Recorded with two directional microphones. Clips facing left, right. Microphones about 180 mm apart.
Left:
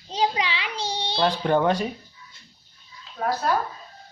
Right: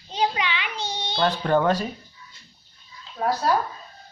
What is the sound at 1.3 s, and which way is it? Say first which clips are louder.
Speech: even; 10° left (ahead or behind).